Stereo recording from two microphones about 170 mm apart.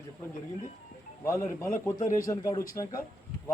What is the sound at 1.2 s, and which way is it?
A man's voice, 15° left (ahead or behind).